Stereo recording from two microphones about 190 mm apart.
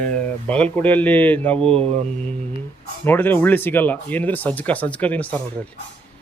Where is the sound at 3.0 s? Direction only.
10° left (ahead or behind).